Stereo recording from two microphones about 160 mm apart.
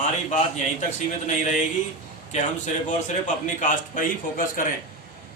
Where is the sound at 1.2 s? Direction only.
50° left (ahead or behind).